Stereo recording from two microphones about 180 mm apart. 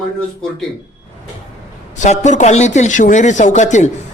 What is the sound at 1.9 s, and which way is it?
A man's voice, 40° left (ahead or behind).